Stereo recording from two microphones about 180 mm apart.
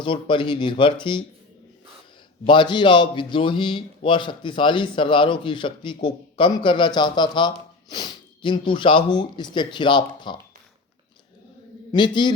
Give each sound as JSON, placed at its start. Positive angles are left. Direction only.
{"t": 0.0, "sound": "a man's voice", "side_deg": 25}
{"t": 2.5, "sound": "a man's voice", "side_deg": 25}
{"t": 11.9, "sound": "a man's voice", "side_deg": 25}